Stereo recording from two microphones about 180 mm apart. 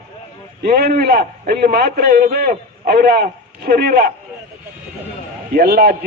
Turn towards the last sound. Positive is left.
turn(degrees=-55)  # may be behind; listen again after turning